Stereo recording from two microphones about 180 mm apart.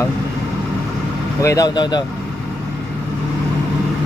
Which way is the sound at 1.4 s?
20° left (ahead or behind).